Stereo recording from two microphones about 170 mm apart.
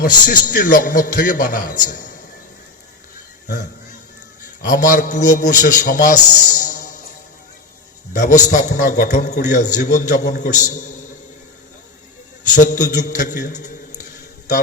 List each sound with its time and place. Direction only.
0.0 s a man's voice: 55° left (ahead or behind)
4.6 s a man's voice: 50° left (ahead or behind)
8.1 s a man's voice: 50° left (ahead or behind)
12.5 s a man's voice: 45° left (ahead or behind)